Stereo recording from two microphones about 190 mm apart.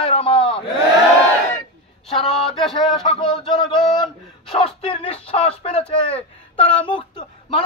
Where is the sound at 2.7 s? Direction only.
25° left (ahead or behind).